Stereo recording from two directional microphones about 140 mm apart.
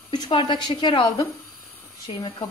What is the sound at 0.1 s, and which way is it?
A woman's voice, 35° left (ahead or behind).